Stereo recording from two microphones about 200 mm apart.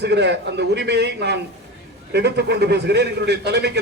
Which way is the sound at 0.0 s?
55° right (ahead or behind).